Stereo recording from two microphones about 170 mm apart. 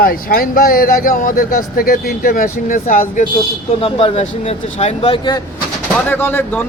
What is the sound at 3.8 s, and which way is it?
Speech, 35° left (ahead or behind).